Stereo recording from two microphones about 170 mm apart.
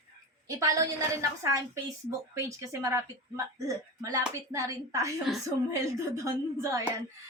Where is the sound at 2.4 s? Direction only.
15° right (ahead or behind).